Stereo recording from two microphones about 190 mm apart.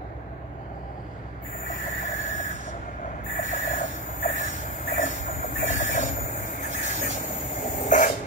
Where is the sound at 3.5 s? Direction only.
40° left (ahead or behind).